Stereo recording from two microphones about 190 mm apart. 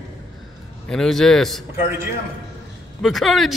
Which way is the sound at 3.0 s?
Centre (ahead or behind).